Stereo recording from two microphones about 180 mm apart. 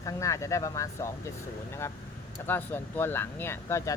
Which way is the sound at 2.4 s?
10° left (ahead or behind).